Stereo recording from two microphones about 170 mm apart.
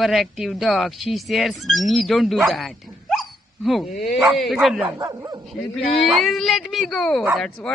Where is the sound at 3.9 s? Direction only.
45° left (ahead or behind).